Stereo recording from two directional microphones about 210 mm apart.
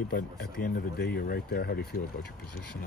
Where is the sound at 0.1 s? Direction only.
45° left (ahead or behind).